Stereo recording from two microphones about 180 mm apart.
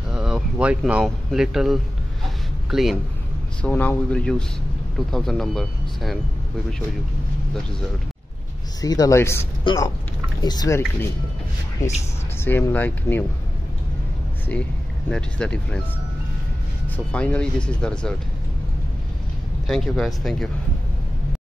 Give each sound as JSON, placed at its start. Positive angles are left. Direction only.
{"t": 0.1, "sound": "speech", "side_deg": -5}
{"t": 2.2, "sound": "a sound", "side_deg": 0}
{"t": 3.6, "sound": "speech", "side_deg": 5}
{"t": 8.8, "sound": "speech", "side_deg": 20}
{"t": 12.4, "sound": "speech", "side_deg": 15}
{"t": 14.5, "sound": "speech", "side_deg": 10}
{"t": 16.9, "sound": "speech", "side_deg": 5}
{"t": 19.7, "sound": "speech", "side_deg": 0}